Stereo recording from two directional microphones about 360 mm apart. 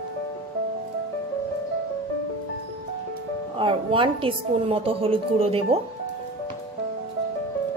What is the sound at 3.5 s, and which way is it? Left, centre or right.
Speech, centre.